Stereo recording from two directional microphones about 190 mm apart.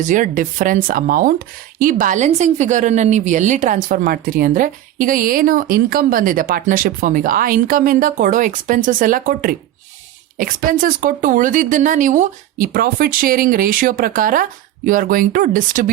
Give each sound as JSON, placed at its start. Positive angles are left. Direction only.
{"t": 0.0, "sound": "a woman's voice", "side_deg": -40}